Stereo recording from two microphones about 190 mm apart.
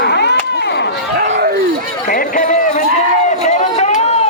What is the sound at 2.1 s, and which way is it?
Run, 45° left (ahead or behind).